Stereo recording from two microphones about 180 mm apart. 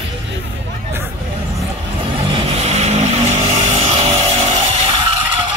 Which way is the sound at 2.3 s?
35° right (ahead or behind).